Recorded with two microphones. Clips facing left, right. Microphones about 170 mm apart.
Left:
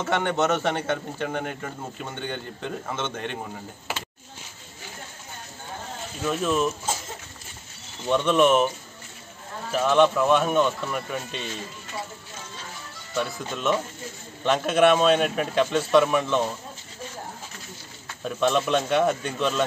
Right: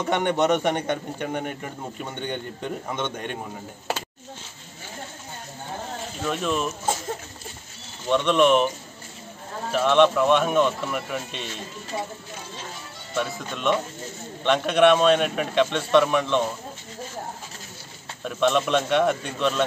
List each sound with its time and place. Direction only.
0.0 s speech: 15° right (ahead or behind)
6.2 s a man's voice: centre (ahead or behind)
8.1 s a man's voice: 5° left (ahead or behind)
9.7 s a man's voice: centre (ahead or behind)
13.5 s a man's voice: 5° left (ahead or behind)
18.2 s a man's voice: centre (ahead or behind)